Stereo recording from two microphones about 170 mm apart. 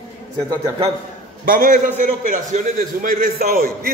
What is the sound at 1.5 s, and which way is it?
A man's voice, 55° right (ahead or behind).